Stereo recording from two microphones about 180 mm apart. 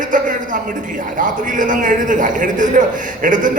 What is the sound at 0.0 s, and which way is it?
A man's voice, 45° right (ahead or behind).